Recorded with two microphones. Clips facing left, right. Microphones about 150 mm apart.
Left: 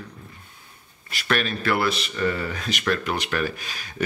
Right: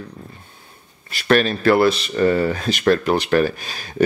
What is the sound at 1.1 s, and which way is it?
Speech, 35° right (ahead or behind).